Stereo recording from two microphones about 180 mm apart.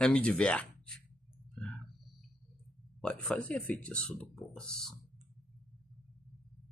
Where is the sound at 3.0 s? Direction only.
5° left (ahead or behind).